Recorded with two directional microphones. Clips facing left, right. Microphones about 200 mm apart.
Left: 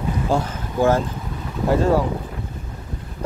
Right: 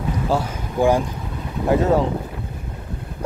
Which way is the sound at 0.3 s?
10° right (ahead or behind).